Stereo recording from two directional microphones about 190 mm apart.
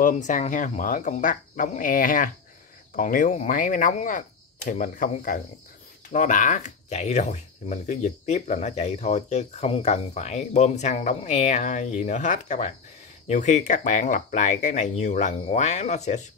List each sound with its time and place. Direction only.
0.0 s speech: 40° left (ahead or behind)